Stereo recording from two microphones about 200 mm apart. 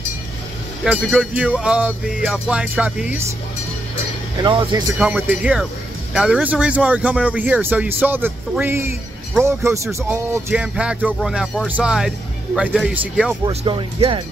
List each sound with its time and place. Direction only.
0.8 s speech: 5° right (ahead or behind)
4.4 s speech: 25° right (ahead or behind)
4.9 s speech: 5° right (ahead or behind)
13.5 s speech: 25° right (ahead or behind)